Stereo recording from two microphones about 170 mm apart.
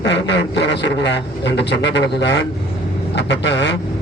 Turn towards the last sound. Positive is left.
turn(degrees=90)